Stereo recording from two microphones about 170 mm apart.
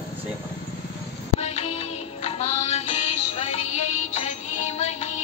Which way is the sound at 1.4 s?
40° left (ahead or behind).